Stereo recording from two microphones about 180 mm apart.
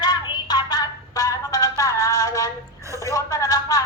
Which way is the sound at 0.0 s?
25° left (ahead or behind).